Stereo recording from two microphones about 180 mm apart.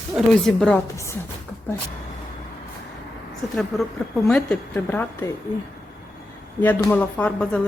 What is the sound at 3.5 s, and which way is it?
Speech, centre (ahead or behind).